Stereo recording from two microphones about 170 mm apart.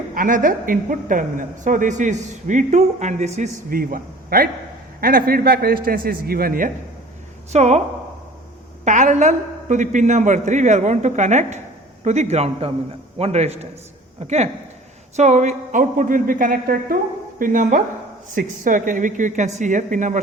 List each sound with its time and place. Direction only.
0.1 s a woman's voice: 50° right (ahead or behind)
3.8 s a man's voice: 60° right (ahead or behind)
7.5 s a man's voice: 40° right (ahead or behind)
8.8 s a woman's voice: 45° right (ahead or behind)